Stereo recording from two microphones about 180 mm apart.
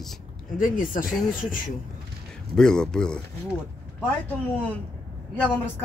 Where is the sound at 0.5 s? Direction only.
50° left (ahead or behind).